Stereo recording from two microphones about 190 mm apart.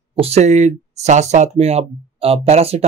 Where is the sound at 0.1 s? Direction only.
30° right (ahead or behind).